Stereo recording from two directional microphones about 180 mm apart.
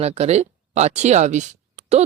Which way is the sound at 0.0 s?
35° right (ahead or behind).